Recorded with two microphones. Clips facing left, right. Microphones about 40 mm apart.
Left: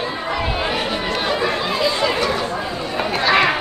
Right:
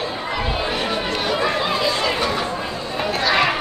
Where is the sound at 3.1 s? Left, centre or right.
Centre.